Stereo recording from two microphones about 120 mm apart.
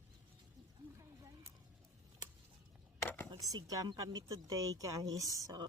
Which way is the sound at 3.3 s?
40° right (ahead or behind).